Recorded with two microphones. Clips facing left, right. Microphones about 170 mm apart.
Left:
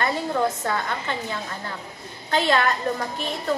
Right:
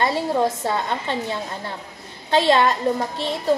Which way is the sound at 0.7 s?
25° right (ahead or behind).